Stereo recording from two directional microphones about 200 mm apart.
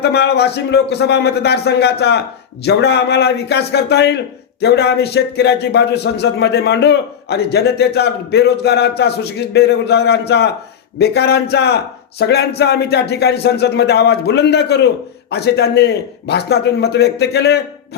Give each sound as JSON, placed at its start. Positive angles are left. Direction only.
{"t": 0.0, "sound": "speech", "side_deg": 55}